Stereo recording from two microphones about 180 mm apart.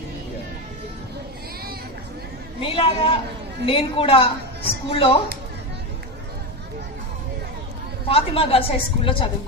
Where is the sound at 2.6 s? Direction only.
30° left (ahead or behind).